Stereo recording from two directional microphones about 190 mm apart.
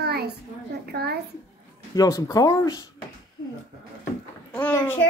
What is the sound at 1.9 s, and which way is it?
Speech, 15° left (ahead or behind).